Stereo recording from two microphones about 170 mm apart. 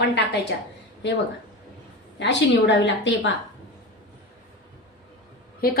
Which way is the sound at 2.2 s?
90° left.